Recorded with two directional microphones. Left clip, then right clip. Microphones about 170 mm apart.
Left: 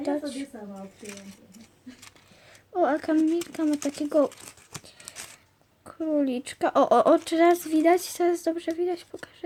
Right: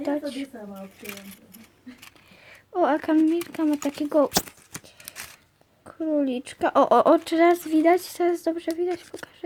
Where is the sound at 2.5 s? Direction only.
10° right (ahead or behind).